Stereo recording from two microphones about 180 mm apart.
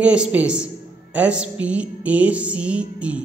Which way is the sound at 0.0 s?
5° right (ahead or behind).